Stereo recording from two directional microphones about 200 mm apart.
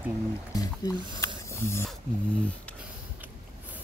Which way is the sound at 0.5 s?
20° left (ahead or behind).